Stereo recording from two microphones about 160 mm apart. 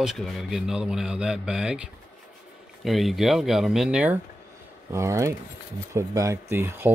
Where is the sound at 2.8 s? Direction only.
Centre (ahead or behind).